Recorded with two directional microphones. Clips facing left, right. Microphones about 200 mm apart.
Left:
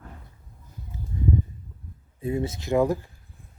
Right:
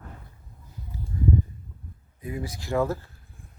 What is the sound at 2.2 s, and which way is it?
Speech, 25° left (ahead or behind).